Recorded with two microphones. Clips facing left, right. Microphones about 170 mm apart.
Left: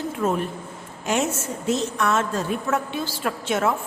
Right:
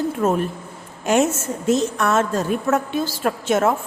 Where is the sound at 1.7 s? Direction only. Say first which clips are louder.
Right 4 dB; 45° right (ahead or behind).